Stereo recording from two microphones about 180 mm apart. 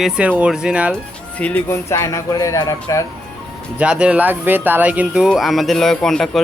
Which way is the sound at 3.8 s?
5° right (ahead or behind).